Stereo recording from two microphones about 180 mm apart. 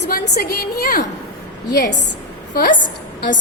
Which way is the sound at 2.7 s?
90° left.